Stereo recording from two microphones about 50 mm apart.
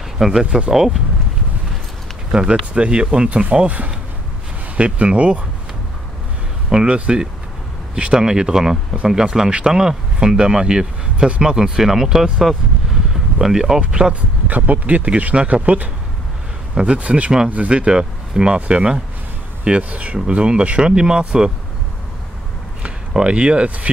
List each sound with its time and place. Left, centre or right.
0.2 s speech: centre
2.3 s speech: centre
2.7 s speech: centre
3.5 s speech: right
6.7 s speech: centre
11.5 s speech: centre
13.1 s a sound: centre
13.7 s speech: centre
14.5 s speech: right; by 21.5 s centre
22.8 s speech: right